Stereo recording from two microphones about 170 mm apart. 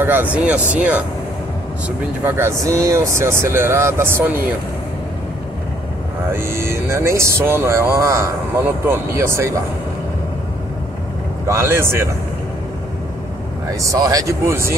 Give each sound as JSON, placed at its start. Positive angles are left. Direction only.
{"t": 0.0, "sound": "speech", "side_deg": -10}
{"t": 2.2, "sound": "speech", "side_deg": -15}
{"t": 6.3, "sound": "speech", "side_deg": -15}
{"t": 11.4, "sound": "speech", "side_deg": -15}
{"t": 13.7, "sound": "speech", "side_deg": -20}